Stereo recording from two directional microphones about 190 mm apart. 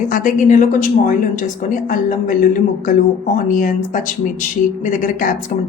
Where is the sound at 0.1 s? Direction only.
45° left (ahead or behind).